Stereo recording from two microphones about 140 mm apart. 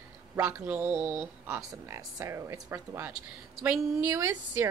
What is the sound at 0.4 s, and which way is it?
A woman's voice, 15° right (ahead or behind).